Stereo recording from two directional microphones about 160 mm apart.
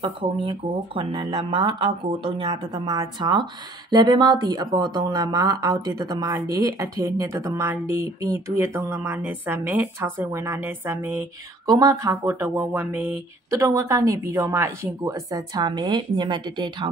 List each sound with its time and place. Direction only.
0.0 s speech: 30° right (ahead or behind)